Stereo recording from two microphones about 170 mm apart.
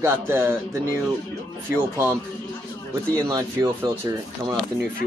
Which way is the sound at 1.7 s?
15° right (ahead or behind).